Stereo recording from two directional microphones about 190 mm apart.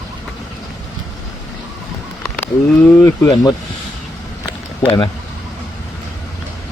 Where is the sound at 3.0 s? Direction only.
15° left (ahead or behind).